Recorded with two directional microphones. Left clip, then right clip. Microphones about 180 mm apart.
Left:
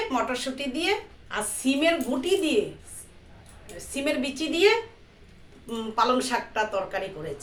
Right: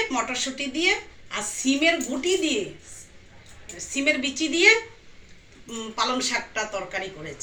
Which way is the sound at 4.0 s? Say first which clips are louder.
Right 4 dB; 35° left (ahead or behind).